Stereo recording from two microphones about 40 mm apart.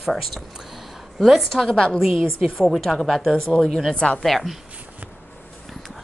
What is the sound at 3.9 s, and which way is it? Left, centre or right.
Speech, left.